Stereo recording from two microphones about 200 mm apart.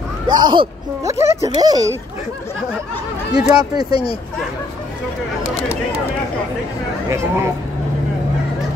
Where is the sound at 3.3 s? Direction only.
5° right (ahead or behind).